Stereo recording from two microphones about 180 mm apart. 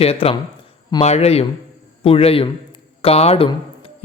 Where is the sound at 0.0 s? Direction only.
35° left (ahead or behind).